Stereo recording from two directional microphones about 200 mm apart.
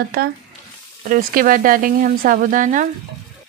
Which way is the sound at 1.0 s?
45° right (ahead or behind).